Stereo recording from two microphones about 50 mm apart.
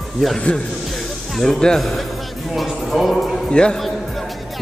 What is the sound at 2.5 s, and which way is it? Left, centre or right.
Music, centre.